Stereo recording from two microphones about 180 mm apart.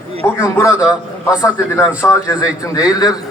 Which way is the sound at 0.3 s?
15° left (ahead or behind).